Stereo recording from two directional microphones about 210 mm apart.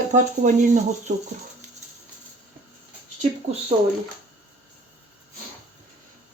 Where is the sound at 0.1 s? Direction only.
35° right (ahead or behind).